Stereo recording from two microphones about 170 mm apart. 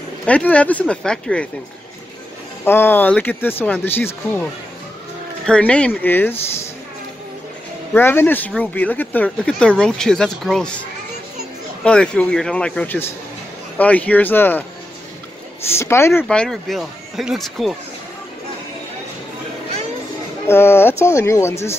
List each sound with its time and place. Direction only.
0.3 s speech: 10° left (ahead or behind)
2.6 s speech: 15° left (ahead or behind)
5.5 s speech: 5° left (ahead or behind)
7.9 s speech: 15° left (ahead or behind)
11.8 s speech: 5° left (ahead or behind)
15.7 s speech: 15° left (ahead or behind)
16.3 s speech: 5° left (ahead or behind)
20.4 s speech: 15° left (ahead or behind)